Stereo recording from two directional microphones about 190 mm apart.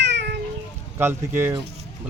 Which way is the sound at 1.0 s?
10° right (ahead or behind).